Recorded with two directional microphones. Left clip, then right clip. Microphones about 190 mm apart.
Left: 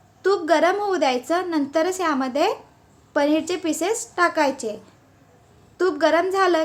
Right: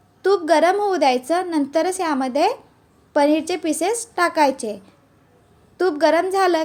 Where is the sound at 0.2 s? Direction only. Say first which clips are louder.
Right 2 dB; 15° right (ahead or behind).